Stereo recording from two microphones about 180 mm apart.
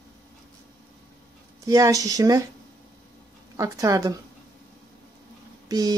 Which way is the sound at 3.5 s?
20° right (ahead or behind).